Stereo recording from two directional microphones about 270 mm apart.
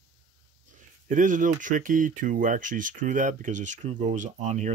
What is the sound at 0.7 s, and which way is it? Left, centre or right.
Speech, right.